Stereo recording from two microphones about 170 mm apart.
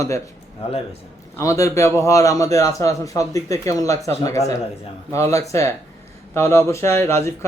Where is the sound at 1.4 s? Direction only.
20° left (ahead or behind).